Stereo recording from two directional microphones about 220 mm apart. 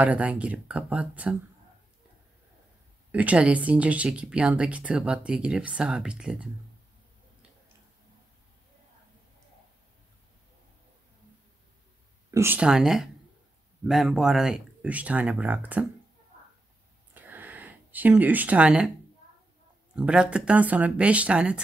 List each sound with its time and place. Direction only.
0.0 s speech: 5° right (ahead or behind)
3.1 s speech: 5° right (ahead or behind)
12.4 s speech: 5° right (ahead or behind)
17.1 s a sound: 10° right (ahead or behind)
20.0 s speech: 5° right (ahead or behind)